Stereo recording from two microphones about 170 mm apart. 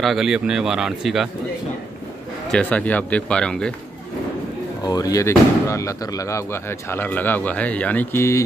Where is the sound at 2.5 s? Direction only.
5° left (ahead or behind).